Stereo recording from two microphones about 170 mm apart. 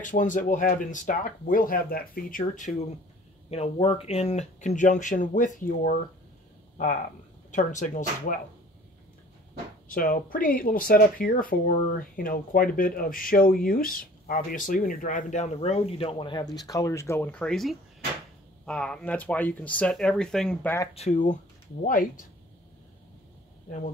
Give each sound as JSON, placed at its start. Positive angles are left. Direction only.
{"t": 0.0, "sound": "speech", "side_deg": 50}
{"t": 7.5, "sound": "speech", "side_deg": 45}
{"t": 9.8, "sound": "speech", "side_deg": 55}
{"t": 20.9, "sound": "speech", "side_deg": 40}